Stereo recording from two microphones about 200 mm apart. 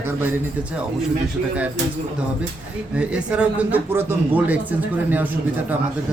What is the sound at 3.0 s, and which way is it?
Speech, 5° right (ahead or behind).